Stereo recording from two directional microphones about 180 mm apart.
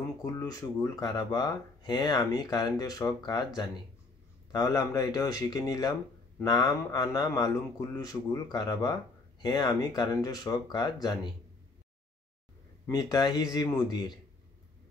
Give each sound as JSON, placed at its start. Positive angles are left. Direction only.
{"t": 0.2, "sound": "speech", "side_deg": 20}
{"t": 12.8, "sound": "speech", "side_deg": 20}